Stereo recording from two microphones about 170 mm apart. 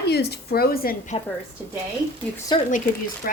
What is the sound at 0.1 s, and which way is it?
Speech, 75° left (ahead or behind).